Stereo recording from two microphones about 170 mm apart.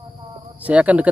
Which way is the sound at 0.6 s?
10° right (ahead or behind).